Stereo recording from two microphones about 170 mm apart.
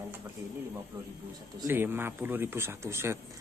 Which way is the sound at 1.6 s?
10° right (ahead or behind).